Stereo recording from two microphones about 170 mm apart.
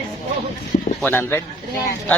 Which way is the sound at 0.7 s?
35° left (ahead or behind).